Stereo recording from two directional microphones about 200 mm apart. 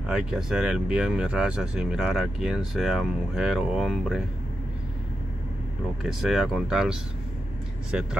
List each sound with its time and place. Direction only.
0.1 s speech: 5° right (ahead or behind)
6.0 s speech: centre (ahead or behind)